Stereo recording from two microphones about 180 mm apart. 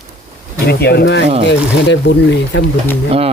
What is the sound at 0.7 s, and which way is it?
Speech, 65° left (ahead or behind).